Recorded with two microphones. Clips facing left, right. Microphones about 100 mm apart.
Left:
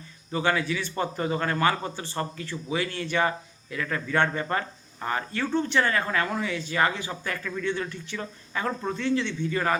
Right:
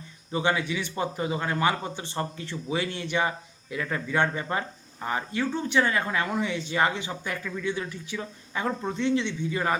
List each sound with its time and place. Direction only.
0.3 s speech: 20° right (ahead or behind)
7.1 s speech: 10° right (ahead or behind)